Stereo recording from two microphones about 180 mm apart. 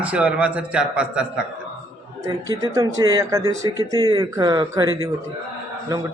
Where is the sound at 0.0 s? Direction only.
5° right (ahead or behind).